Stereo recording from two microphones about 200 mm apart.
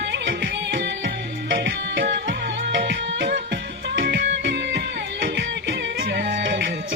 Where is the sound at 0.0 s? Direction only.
55° right (ahead or behind).